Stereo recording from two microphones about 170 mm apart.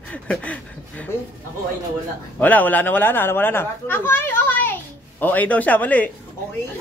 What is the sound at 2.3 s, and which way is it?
Speech, 10° left (ahead or behind).